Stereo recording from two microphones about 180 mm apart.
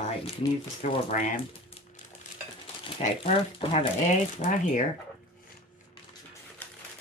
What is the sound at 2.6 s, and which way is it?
Speech, 35° left (ahead or behind).